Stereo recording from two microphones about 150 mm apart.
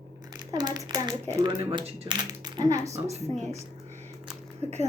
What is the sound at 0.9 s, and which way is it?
Speech, 30° right (ahead or behind).